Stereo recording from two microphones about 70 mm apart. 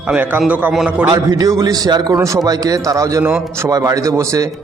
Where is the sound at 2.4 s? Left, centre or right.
Right.